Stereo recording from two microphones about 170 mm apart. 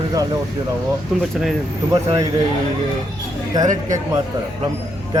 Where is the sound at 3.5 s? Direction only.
20° right (ahead or behind).